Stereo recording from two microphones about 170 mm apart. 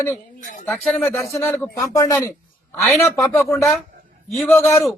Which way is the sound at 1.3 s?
15° left (ahead or behind).